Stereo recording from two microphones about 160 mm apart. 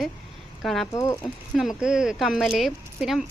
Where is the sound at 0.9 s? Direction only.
20° left (ahead or behind).